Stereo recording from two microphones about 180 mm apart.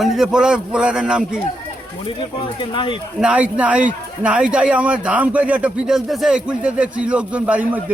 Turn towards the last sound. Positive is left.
turn(degrees=-10)  # may be behind; listen again after turning